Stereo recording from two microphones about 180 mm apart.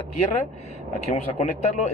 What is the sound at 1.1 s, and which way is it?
Speech, 35° left (ahead or behind).